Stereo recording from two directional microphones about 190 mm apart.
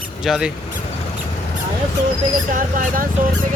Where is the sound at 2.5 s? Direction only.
45° right (ahead or behind).